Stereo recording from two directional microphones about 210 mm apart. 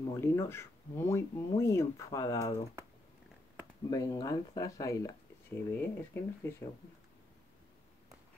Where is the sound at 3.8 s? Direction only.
15° left (ahead or behind).